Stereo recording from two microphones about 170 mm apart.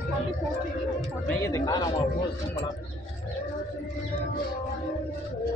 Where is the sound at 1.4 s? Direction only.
20° left (ahead or behind).